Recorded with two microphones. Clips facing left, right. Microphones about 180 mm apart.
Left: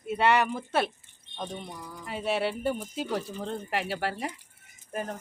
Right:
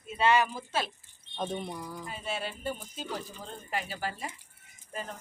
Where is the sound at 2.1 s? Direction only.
70° left (ahead or behind).